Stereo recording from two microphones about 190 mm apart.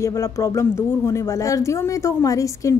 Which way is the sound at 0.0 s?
15° left (ahead or behind).